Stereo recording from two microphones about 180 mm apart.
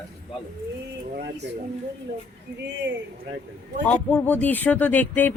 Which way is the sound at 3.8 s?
10° left (ahead or behind).